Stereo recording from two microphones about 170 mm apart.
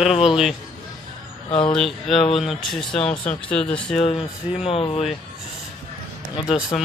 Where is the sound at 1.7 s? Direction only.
Centre (ahead or behind).